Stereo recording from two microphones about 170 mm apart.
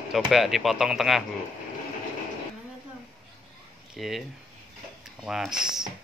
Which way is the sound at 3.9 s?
Centre (ahead or behind).